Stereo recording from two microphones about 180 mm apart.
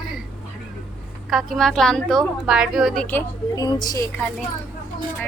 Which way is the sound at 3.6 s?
25° left (ahead or behind).